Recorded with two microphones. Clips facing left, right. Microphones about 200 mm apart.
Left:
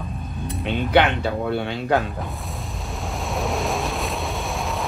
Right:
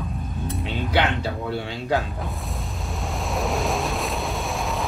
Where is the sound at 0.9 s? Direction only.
60° left (ahead or behind).